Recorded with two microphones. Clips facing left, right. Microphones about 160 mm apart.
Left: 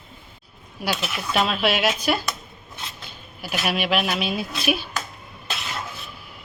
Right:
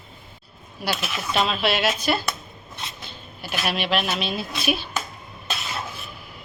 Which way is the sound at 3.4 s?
10° left (ahead or behind).